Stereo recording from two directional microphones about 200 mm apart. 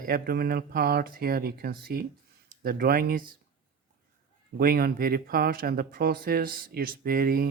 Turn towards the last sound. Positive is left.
turn(degrees=-50)  # may be behind; listen again after turning